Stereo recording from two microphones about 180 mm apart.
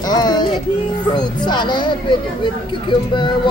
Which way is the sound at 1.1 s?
25° left (ahead or behind).